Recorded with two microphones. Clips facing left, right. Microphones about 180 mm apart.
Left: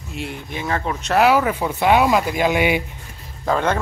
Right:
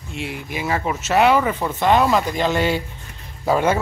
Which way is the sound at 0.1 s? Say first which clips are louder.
Right 1 dB; centre (ahead or behind).